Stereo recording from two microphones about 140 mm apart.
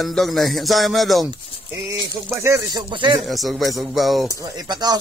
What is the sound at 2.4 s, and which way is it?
Speech, 25° right (ahead or behind).